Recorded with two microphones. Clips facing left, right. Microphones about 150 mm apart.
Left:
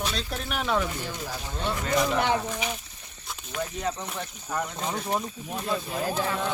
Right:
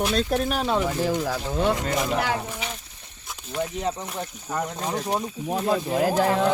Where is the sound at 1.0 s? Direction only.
90° right.